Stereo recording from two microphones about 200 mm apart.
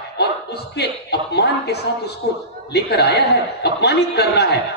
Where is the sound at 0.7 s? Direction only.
55° left (ahead or behind).